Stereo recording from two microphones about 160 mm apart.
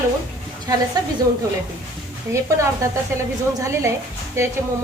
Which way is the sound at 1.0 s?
25° right (ahead or behind).